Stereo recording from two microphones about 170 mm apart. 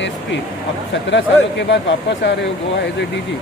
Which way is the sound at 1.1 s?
90° left.